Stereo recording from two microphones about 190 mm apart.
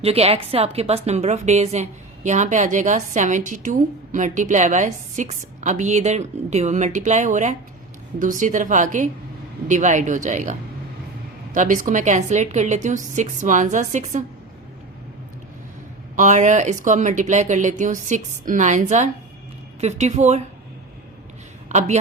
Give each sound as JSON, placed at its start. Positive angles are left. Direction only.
{"t": 0.0, "sound": "a woman's voice", "side_deg": -30}
{"t": 16.1, "sound": "a woman's voice", "side_deg": -40}
{"t": 21.7, "sound": "a woman's voice", "side_deg": -40}